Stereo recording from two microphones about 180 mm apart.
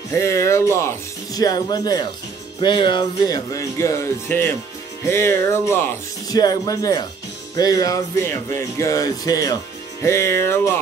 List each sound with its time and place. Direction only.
0.1 s speech: 15° left (ahead or behind)